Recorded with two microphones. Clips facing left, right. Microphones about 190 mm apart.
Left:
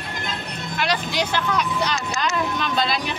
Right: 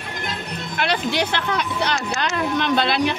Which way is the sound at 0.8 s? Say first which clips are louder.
Right 2 dB; 60° right (ahead or behind).